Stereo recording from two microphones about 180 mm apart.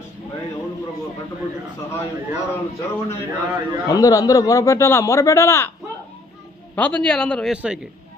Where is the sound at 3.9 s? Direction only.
20° left (ahead or behind).